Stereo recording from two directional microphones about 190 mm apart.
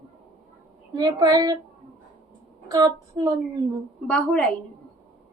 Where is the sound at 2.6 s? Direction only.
15° right (ahead or behind).